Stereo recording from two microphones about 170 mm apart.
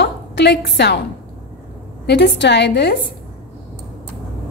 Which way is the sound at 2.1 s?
80° left.